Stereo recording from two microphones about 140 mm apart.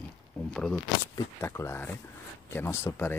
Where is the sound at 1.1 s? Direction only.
20° left (ahead or behind).